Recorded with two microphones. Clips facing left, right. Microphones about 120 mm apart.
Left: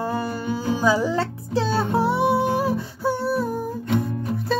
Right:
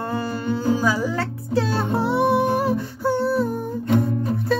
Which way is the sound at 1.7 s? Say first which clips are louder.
Left 1 dB; 10° left (ahead or behind).